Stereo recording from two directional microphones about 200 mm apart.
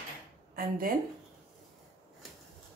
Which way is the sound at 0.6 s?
45° right (ahead or behind).